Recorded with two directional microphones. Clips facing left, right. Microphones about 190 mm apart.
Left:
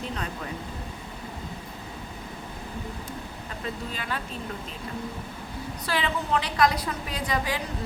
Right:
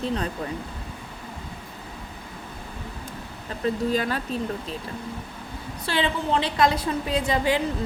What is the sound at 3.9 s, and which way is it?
Speech, 40° right (ahead or behind).